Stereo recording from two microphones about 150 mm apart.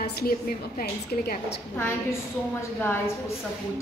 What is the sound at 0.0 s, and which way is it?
A woman's voice, 90° left.